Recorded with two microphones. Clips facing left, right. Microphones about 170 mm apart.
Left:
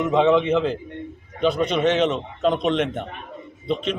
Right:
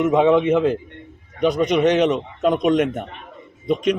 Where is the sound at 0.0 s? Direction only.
10° right (ahead or behind).